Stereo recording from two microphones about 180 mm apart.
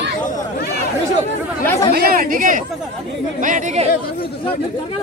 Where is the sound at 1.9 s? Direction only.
55° right (ahead or behind).